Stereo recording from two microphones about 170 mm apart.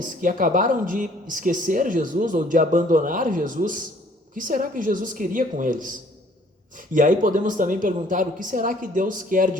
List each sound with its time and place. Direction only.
0.0 s speech: 50° right (ahead or behind)